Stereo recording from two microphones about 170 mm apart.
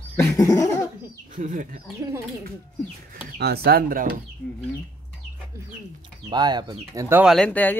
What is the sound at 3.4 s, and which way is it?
Speech, 65° right (ahead or behind).